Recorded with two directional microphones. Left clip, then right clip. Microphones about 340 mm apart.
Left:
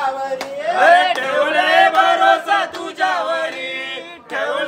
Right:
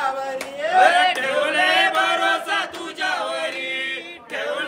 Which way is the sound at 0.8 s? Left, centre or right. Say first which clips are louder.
Left 4 dB; left.